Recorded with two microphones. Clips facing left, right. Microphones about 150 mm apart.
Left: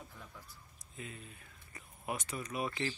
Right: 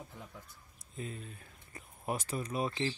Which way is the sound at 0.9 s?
35° right (ahead or behind).